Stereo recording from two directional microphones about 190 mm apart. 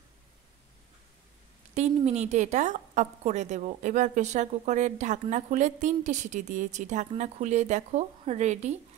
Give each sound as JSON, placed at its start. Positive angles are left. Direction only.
{"t": 1.8, "sound": "a woman's voice", "side_deg": -35}